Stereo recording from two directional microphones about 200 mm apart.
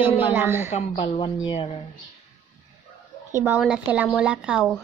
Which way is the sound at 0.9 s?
25° left (ahead or behind).